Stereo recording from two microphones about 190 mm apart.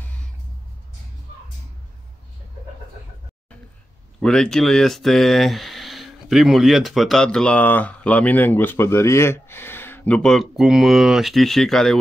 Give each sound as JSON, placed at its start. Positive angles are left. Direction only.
{"t": 4.2, "sound": "speech", "side_deg": 5}